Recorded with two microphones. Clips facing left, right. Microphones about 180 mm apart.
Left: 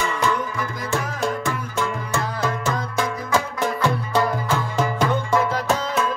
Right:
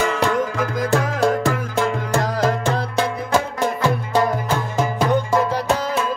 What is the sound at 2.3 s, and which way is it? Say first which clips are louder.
Music: right 5 dB; 35° right (ahead or behind).